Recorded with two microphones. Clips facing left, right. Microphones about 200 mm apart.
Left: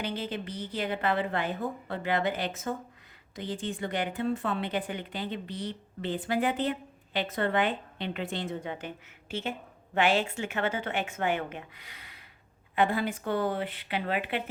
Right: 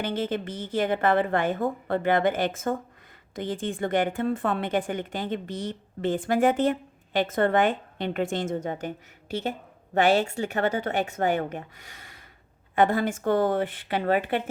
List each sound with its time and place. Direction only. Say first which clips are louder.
0.0 s a woman's voice: right 6 dB; 50° right (ahead or behind)